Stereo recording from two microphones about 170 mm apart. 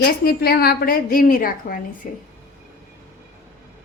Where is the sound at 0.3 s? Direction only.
65° left (ahead or behind).